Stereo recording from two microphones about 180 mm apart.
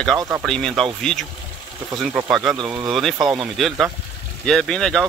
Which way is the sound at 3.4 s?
Centre (ahead or behind).